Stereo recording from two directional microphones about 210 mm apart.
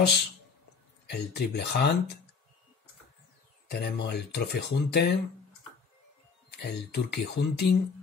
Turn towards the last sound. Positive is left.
turn(degrees=50)  # may be behind; listen again after turning